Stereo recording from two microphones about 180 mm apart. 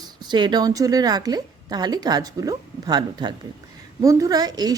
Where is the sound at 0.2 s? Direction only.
25° right (ahead or behind).